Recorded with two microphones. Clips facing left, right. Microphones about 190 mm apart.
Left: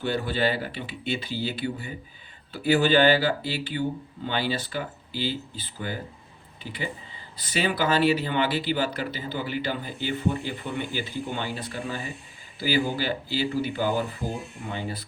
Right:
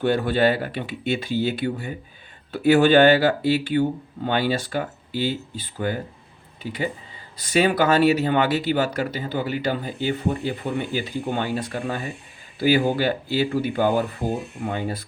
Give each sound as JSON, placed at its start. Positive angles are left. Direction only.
{"t": 0.0, "sound": "speech", "side_deg": -55}